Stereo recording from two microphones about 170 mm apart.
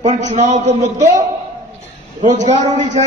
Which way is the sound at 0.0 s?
40° right (ahead or behind).